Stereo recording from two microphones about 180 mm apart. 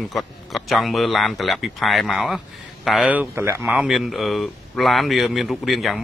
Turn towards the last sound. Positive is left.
turn(degrees=0)  # may be behind; listen again after turning